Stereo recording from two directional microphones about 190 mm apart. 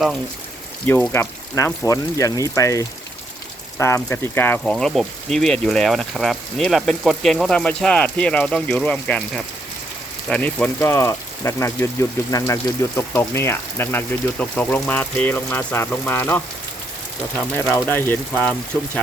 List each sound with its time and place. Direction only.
0.9 s speech: 10° left (ahead or behind)
17.5 s speech: 10° left (ahead or behind)